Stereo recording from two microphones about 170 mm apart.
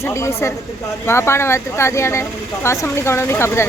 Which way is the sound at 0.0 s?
15° left (ahead or behind).